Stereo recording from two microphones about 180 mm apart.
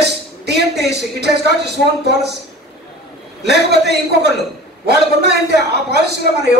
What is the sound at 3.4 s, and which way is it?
Speech, 65° right (ahead or behind).